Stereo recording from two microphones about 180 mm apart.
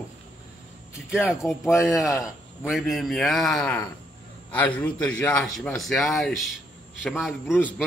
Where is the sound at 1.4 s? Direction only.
10° left (ahead or behind).